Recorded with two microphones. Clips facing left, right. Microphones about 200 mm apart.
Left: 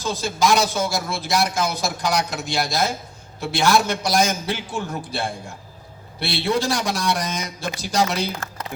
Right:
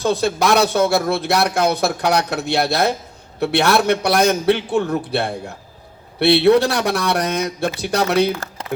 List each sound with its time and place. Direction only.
0.0 s speech: 65° right (ahead or behind)